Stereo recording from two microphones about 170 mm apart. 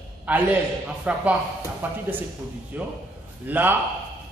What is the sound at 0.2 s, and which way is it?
A man's voice, 10° right (ahead or behind).